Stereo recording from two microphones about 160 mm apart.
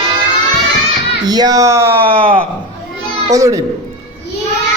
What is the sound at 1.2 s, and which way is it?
Music, 25° right (ahead or behind).